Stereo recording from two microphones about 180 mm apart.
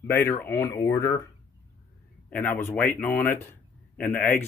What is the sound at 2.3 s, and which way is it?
Speech, 10° left (ahead or behind).